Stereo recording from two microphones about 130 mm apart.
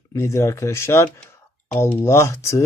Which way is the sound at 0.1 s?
20° left (ahead or behind).